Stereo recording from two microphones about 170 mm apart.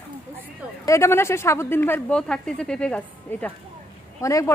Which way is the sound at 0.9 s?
15° left (ahead or behind).